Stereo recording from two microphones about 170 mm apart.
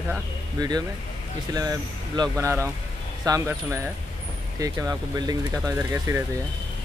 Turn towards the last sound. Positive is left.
turn(degrees=-15)  # may be behind; listen again after turning